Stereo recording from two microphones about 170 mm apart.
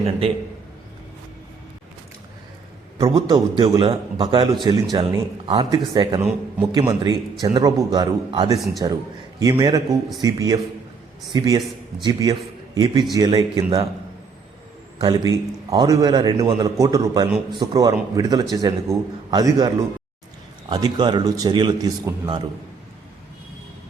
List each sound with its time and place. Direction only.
3.1 s a man's voice: 25° right (ahead or behind)
15.0 s speech: 25° right (ahead or behind)
20.7 s speech: 25° right (ahead or behind)